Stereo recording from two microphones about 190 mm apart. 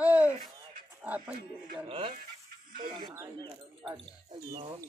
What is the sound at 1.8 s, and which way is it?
Speech, 25° right (ahead or behind).